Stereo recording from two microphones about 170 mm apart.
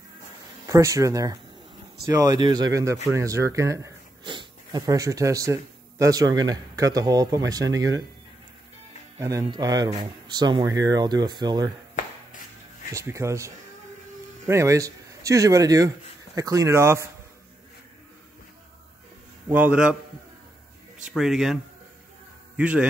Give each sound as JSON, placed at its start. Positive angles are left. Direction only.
{"t": 0.7, "sound": "speech", "side_deg": -20}
{"t": 9.2, "sound": "speech", "side_deg": -20}
{"t": 12.9, "sound": "speech", "side_deg": -15}
{"t": 19.5, "sound": "speech", "side_deg": -10}
{"t": 21.0, "sound": "speech", "side_deg": 0}
{"t": 22.6, "sound": "speech", "side_deg": -10}